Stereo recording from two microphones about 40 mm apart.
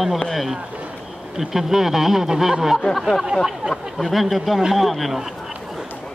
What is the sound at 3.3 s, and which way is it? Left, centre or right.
Speech, right.